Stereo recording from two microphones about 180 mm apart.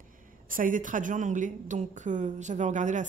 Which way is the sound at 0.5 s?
50° right (ahead or behind).